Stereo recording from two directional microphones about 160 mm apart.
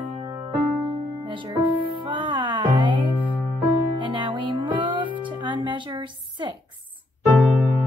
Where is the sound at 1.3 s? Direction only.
30° right (ahead or behind).